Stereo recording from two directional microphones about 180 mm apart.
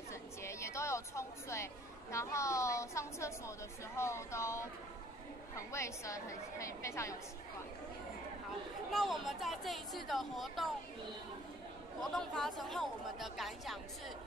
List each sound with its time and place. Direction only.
0.1 s a woman's voice: 15° left (ahead or behind)
5.7 s a woman's voice: 15° left (ahead or behind)
8.9 s speech: centre (ahead or behind)
12.0 s speech: centre (ahead or behind)